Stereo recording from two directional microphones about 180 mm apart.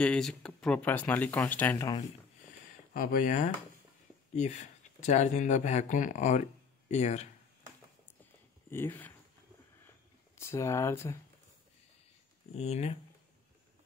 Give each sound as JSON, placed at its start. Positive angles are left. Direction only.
{"t": 0.0, "sound": "speech", "side_deg": 5}
{"t": 2.9, "sound": "speech", "side_deg": 50}
{"t": 8.6, "sound": "speech", "side_deg": 10}
{"t": 10.3, "sound": "speech", "side_deg": 15}
{"t": 12.5, "sound": "speech", "side_deg": 35}